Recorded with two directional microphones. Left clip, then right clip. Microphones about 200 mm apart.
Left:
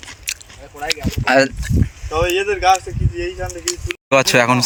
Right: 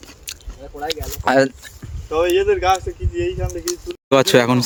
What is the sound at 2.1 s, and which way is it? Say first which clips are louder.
Speech: right 2 dB; 10° left (ahead or behind).